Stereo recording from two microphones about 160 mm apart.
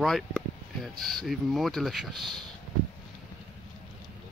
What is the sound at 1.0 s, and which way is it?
Speech, centre (ahead or behind).